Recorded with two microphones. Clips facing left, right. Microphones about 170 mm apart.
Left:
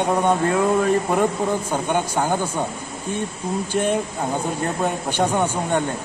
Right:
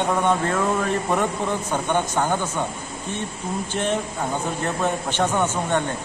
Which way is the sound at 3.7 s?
10° left (ahead or behind).